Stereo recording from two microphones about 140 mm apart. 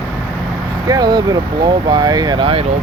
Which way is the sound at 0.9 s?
30° right (ahead or behind).